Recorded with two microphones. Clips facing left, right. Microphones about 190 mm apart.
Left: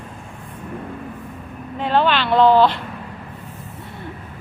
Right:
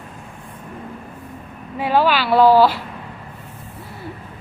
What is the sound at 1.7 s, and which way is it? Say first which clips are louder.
Speech: right 1 dB; 5° right (ahead or behind).